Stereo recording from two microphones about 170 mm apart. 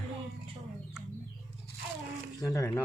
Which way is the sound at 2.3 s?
20° left (ahead or behind).